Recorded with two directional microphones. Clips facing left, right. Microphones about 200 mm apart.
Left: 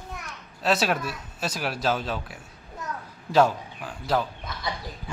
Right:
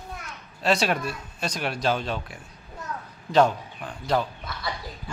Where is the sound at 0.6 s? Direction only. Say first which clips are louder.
Right 1 dB; centre (ahead or behind).